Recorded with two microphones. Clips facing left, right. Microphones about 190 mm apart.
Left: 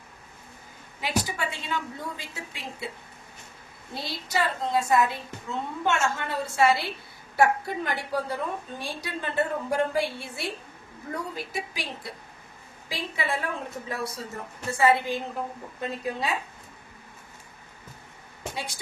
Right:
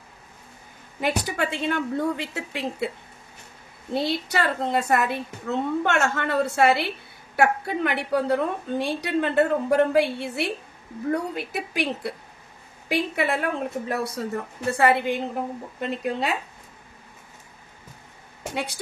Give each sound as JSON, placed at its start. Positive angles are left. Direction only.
{"t": 1.0, "sound": "a woman's voice", "side_deg": -60}
{"t": 3.9, "sound": "a woman's voice", "side_deg": -65}
{"t": 18.5, "sound": "speech", "side_deg": -65}